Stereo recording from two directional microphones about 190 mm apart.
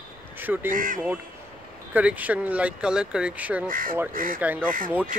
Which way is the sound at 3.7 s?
45° right (ahead or behind).